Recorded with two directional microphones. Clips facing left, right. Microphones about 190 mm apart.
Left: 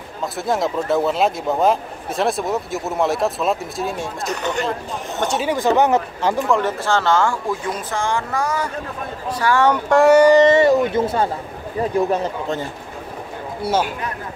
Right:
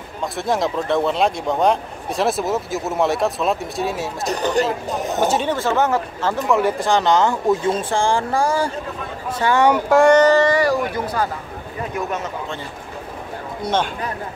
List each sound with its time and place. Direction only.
0.2 s speech: centre (ahead or behind)
4.3 s speech: 35° right (ahead or behind)
5.2 s speech: 5° right (ahead or behind)
5.5 s speech: 15° left (ahead or behind)
6.5 s speech: 15° right (ahead or behind); by 8.7 s 30° right (ahead or behind)
9.4 s speech: 20° right (ahead or behind)
9.8 s speech: centre (ahead or behind); by 12.5 s 35° left (ahead or behind)
13.6 s a man's voice: 5° left (ahead or behind)